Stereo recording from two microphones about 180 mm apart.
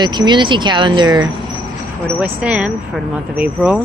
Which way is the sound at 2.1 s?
5° right (ahead or behind).